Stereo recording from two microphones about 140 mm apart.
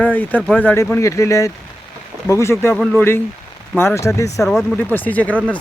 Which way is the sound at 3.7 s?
20° left (ahead or behind).